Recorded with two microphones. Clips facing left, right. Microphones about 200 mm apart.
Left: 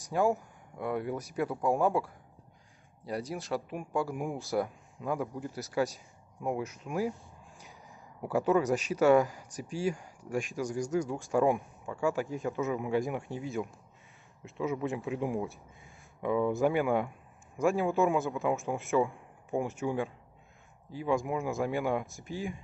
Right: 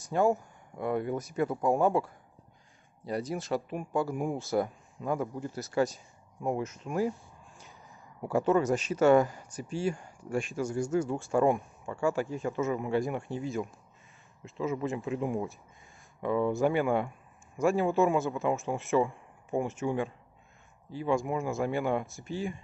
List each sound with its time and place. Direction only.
0.1 s a man's voice: 5° left (ahead or behind)
8.2 s speech: 10° left (ahead or behind)
11.3 s a man's voice: 5° left (ahead or behind)
15.0 s a man's voice: 5° left (ahead or behind)